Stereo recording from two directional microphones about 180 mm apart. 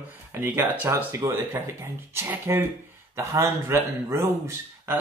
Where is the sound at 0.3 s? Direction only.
10° right (ahead or behind).